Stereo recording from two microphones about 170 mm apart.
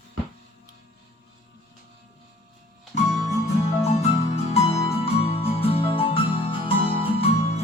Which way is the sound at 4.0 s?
40° left (ahead or behind).